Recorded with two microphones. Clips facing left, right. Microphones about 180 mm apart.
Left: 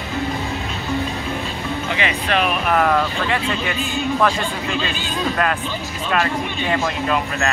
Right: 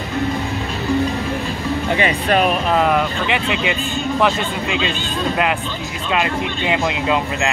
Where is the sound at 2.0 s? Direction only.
40° right (ahead or behind).